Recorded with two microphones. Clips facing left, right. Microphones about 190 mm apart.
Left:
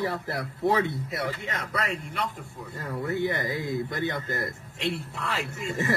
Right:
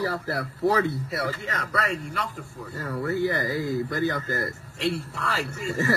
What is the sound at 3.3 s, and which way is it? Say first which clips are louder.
A man's voice: right 3 dB; 40° right (ahead or behind).